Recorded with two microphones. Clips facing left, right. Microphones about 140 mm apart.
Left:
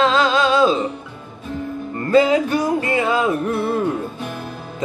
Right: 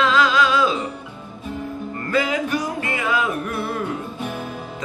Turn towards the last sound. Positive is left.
turn(degrees=30)  # may be behind; listen again after turning